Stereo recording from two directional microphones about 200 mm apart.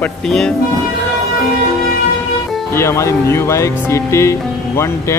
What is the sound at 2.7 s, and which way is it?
Speech, 15° left (ahead or behind).